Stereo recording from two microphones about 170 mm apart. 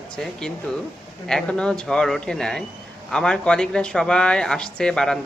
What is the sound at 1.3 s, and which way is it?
Speech, 5° left (ahead or behind).